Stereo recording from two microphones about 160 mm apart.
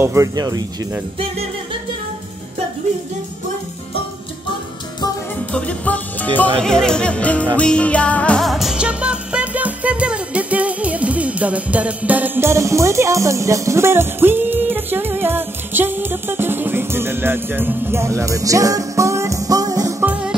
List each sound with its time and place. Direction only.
0.0 s speech: 20° right (ahead or behind)
5.5 s music: 10° left (ahead or behind)
6.6 s jingle bell: 5° left (ahead or behind)
7.5 s music: 5° left (ahead or behind); by 20.1 s 20° right (ahead or behind)
20.1 s music: 5° right (ahead or behind)